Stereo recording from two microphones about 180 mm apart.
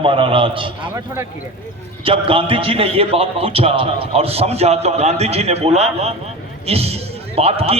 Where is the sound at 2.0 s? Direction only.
30° right (ahead or behind).